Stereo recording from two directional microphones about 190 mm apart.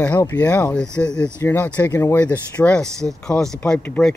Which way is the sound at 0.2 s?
10° left (ahead or behind).